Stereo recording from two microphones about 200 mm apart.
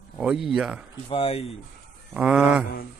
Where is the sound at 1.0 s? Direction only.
30° left (ahead or behind).